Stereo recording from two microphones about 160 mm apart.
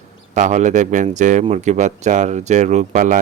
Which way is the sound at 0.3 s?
50° right (ahead or behind).